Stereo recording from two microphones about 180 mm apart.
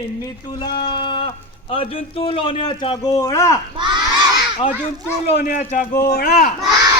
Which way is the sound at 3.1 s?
15° left (ahead or behind).